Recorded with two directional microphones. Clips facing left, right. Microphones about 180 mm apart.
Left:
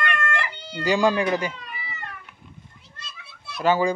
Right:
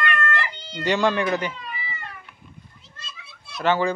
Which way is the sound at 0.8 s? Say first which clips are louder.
Left 1 dB; 10° left (ahead or behind).